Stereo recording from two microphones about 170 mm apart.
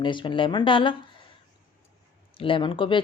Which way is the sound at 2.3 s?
30° left (ahead or behind).